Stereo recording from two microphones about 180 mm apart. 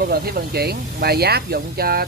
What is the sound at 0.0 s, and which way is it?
Speech, 60° right (ahead or behind).